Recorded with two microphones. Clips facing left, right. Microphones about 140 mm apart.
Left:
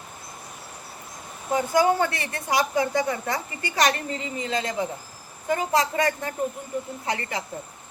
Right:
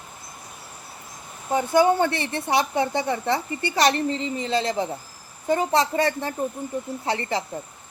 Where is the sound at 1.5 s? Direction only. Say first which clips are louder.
Right 2 dB; 25° right (ahead or behind).